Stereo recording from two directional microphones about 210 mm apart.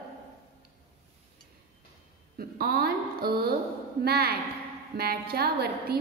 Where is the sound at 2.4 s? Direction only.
45° right (ahead or behind).